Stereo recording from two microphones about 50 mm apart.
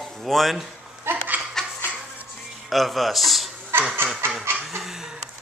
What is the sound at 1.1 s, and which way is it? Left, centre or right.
Laughter, right.